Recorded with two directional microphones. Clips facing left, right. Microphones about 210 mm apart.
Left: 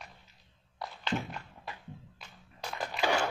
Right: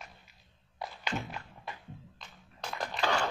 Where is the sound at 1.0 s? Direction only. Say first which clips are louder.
Left 3 dB; 10° right (ahead or behind).